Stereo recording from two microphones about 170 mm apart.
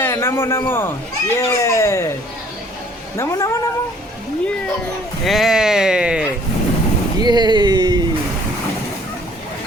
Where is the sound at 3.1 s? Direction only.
15° left (ahead or behind).